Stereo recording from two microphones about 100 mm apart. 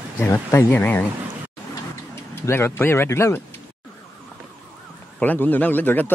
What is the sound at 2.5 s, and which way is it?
Speech, 25° left (ahead or behind).